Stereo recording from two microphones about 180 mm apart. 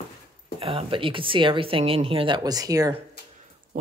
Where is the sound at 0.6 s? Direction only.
30° right (ahead or behind).